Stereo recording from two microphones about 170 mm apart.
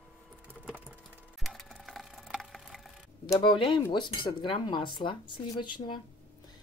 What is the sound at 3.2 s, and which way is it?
Cutlery, 25° left (ahead or behind).